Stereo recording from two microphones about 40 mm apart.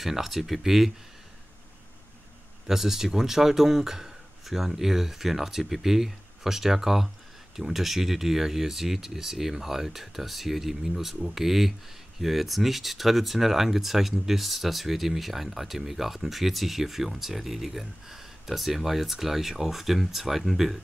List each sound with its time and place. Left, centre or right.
0.0 s speech: centre
2.6 s speech: centre